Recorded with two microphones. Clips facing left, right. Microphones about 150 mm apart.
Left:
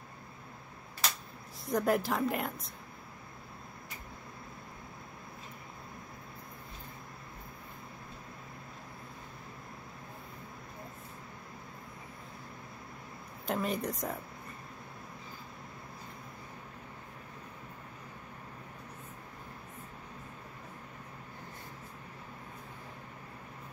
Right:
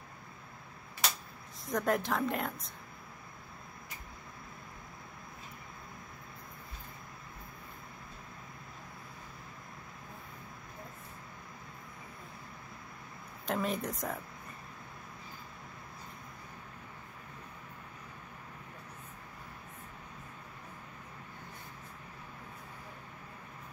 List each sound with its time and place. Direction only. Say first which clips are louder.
1.7 s speech: left 2 dB; centre (ahead or behind)
13.5 s speech: left 1 dB; centre (ahead or behind)